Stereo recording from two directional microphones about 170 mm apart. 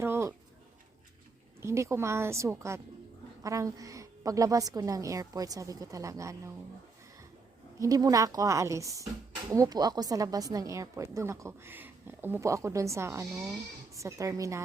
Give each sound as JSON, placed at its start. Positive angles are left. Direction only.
{"t": 0.0, "sound": "a woman's voice", "side_deg": -15}
{"t": 1.6, "sound": "a woman's voice", "side_deg": -15}
{"t": 7.8, "sound": "a woman's voice", "side_deg": -20}